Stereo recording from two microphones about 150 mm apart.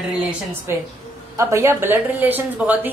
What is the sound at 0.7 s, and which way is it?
A woman's voice, 15° right (ahead or behind).